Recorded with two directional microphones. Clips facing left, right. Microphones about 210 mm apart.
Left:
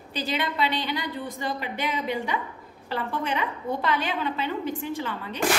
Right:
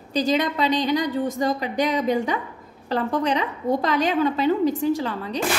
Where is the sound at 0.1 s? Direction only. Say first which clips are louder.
Right 8 dB; 40° right (ahead or behind).